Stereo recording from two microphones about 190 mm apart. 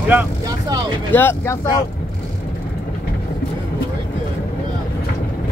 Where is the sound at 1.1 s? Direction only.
10° left (ahead or behind).